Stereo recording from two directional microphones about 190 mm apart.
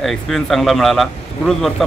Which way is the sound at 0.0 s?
Centre (ahead or behind).